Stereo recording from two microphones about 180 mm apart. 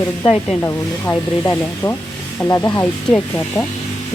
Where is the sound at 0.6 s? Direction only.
15° left (ahead or behind).